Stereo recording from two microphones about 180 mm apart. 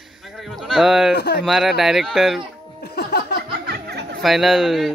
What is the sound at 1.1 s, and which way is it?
Speech, 70° left (ahead or behind).